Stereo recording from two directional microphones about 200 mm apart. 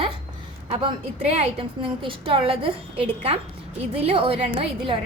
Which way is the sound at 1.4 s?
25° right (ahead or behind).